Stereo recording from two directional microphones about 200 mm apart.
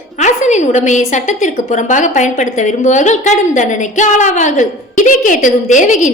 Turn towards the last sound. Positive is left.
turn(degrees=40)  # may be behind; listen again after turning